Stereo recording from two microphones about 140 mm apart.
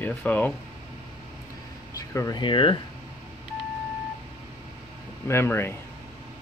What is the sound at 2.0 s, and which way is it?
Air conditioning, 20° left (ahead or behind).